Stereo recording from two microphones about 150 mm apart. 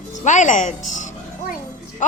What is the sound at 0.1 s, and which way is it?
Music, 55° left (ahead or behind).